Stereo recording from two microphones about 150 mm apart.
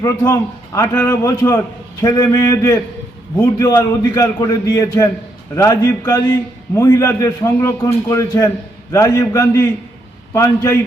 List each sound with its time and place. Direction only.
0.0 s a man's voice: 15° left (ahead or behind)